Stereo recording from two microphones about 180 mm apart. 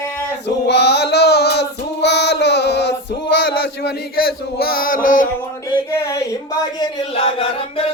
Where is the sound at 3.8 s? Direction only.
55° left (ahead or behind).